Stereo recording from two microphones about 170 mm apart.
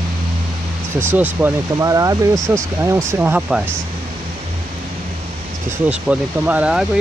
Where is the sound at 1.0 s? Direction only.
10° right (ahead or behind).